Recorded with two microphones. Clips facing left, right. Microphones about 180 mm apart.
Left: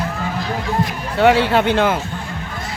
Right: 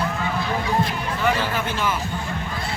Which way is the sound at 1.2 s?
70° left (ahead or behind).